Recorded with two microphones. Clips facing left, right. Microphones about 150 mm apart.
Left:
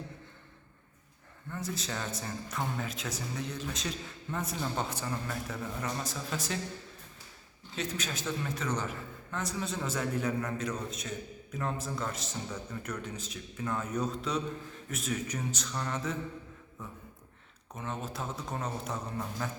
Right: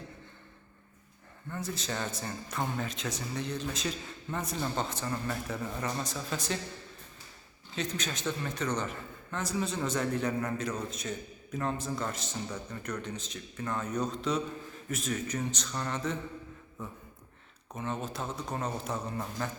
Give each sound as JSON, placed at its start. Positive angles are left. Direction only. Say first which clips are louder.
{"t": 1.5, "sound": "a man's voice", "louder": "right 1 dB", "side_deg": 0}
{"t": 7.8, "sound": "a man's voice", "louder": "right 1 dB", "side_deg": 5}